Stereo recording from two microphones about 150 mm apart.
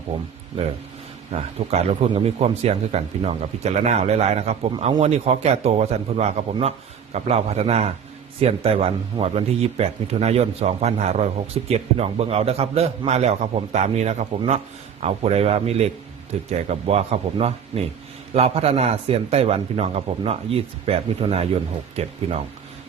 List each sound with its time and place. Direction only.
1.3 s speech: 45° right (ahead or behind)